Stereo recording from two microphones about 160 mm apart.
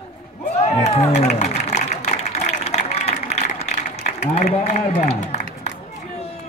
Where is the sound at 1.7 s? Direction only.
45° left (ahead or behind).